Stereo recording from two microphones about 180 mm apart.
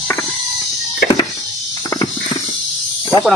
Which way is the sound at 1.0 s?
60° left (ahead or behind).